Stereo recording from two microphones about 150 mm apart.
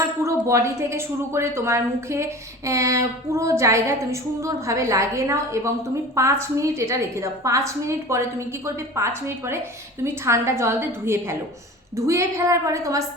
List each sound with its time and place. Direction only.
0.4 s a woman's voice: 20° right (ahead or behind)